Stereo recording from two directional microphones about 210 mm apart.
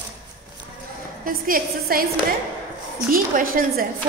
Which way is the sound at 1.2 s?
45° right (ahead or behind).